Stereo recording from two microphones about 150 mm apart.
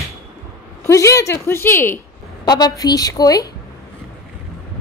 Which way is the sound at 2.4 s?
30° left (ahead or behind).